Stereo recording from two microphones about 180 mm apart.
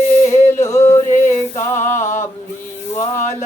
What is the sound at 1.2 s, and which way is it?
Music, 15° left (ahead or behind).